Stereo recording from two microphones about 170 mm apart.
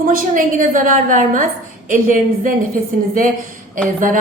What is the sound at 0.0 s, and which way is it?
A woman's voice, 55° right (ahead or behind).